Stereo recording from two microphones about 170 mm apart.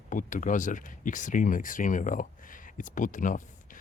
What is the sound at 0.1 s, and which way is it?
Speech, 50° left (ahead or behind).